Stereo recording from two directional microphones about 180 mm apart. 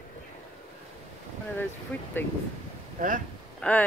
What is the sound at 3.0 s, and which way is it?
Speech, 45° right (ahead or behind).